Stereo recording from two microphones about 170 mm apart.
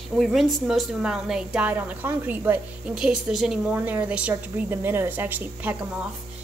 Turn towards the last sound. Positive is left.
turn(degrees=-10)  # may be behind; listen again after turning